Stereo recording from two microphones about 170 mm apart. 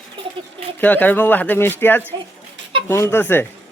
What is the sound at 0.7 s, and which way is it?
Speech, 10° left (ahead or behind).